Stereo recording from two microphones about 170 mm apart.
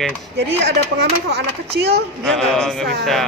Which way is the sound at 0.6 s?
75° right (ahead or behind).